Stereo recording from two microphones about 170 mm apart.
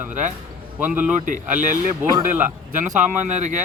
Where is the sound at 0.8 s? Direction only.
10° right (ahead or behind).